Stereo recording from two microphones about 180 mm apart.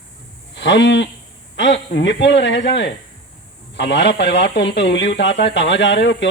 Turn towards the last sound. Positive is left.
turn(degrees=90)